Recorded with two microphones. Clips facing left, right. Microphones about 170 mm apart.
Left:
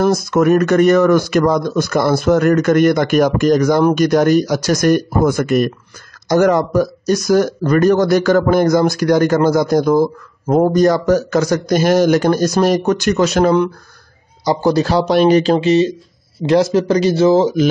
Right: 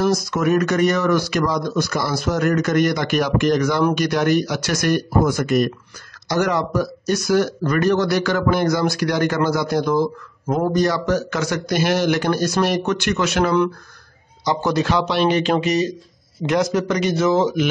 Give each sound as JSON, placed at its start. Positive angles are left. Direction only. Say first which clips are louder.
{"t": 0.0, "sound": "speech", "louder": "left 6 dB", "side_deg": 55}